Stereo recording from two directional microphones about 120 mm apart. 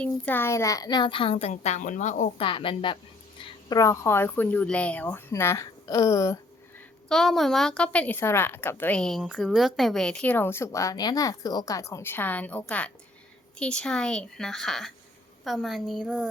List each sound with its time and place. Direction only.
0.0 s a child's voice: 15° left (ahead or behind); by 2.3 s 85° left
2.4 s a child's voice: 45° left (ahead or behind)
3.4 s speech: 30° left (ahead or behind)
7.1 s speech: 5° left (ahead or behind)
9.0 s a woman's voice: 5° left (ahead or behind)